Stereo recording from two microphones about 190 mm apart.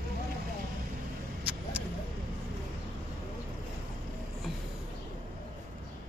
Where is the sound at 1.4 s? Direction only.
5° right (ahead or behind).